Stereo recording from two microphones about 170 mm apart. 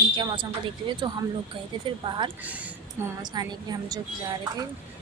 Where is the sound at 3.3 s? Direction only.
25° right (ahead or behind).